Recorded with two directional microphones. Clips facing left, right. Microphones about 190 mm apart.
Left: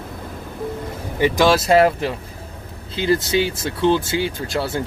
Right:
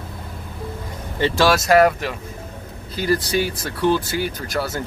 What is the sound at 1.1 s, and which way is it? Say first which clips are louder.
Speech: left 2 dB; 15° left (ahead or behind).